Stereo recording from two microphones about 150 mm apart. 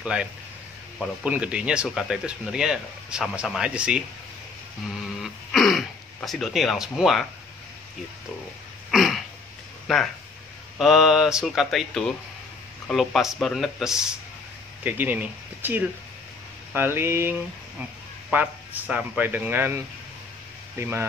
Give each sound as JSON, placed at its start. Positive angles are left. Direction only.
{"t": 0.0, "sound": "speech", "side_deg": -5}
{"t": 5.2, "sound": "throat clearing", "side_deg": 0}
{"t": 8.9, "sound": "a sound", "side_deg": 0}
{"t": 9.9, "sound": "speech", "side_deg": 0}
{"t": 18.3, "sound": "speech", "side_deg": -10}
{"t": 20.7, "sound": "speech", "side_deg": -15}